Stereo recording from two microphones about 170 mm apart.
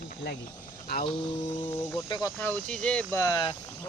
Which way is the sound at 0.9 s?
65° left (ahead or behind).